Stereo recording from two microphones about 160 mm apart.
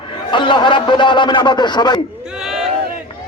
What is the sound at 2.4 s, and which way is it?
Crowd, 5° right (ahead or behind).